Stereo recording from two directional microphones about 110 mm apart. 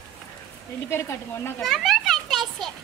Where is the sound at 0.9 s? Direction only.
25° left (ahead or behind).